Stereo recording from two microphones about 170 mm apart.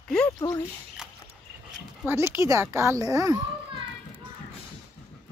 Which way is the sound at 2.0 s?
15° right (ahead or behind).